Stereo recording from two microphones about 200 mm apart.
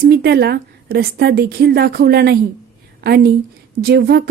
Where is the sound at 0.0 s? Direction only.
55° right (ahead or behind).